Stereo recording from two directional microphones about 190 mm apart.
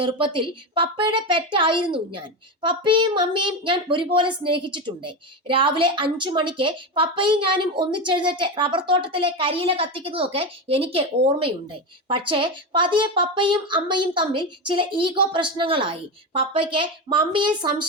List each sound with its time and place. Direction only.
0.0 s a woman's voice: 25° right (ahead or behind)